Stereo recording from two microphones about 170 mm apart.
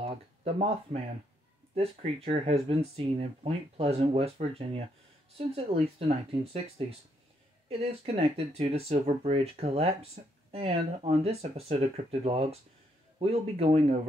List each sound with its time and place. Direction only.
0.0 s speech: 35° right (ahead or behind)
7.6 s speech: 35° right (ahead or behind)